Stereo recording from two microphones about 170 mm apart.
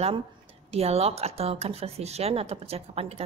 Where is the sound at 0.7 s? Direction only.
35° right (ahead or behind).